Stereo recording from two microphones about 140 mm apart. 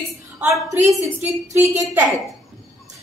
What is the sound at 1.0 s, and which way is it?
Speech, 20° right (ahead or behind).